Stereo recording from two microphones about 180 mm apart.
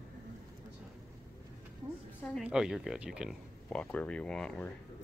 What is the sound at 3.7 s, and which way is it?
Speech, 5° left (ahead or behind).